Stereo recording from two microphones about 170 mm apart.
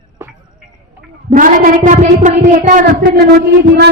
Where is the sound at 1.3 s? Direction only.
50° right (ahead or behind).